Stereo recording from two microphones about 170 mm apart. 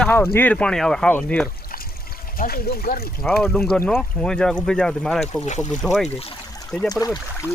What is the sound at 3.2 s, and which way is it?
Speech, 5° left (ahead or behind).